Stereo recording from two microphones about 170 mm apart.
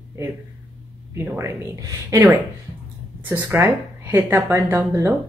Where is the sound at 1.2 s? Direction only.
15° right (ahead or behind).